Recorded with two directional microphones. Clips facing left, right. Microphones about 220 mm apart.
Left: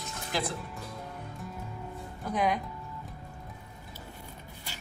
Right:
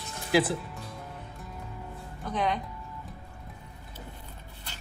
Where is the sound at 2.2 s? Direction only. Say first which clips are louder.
Left 1 dB; 10° left (ahead or behind).